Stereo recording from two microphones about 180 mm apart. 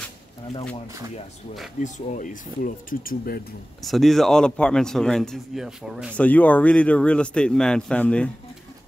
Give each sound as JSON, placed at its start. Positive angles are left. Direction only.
{"t": 1.8, "sound": "speech", "side_deg": 45}
{"t": 3.8, "sound": "a man's voice", "side_deg": 0}
{"t": 6.1, "sound": "a man's voice", "side_deg": 10}